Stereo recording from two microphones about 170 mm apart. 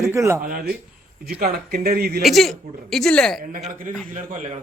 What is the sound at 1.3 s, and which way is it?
Speech, 60° right (ahead or behind).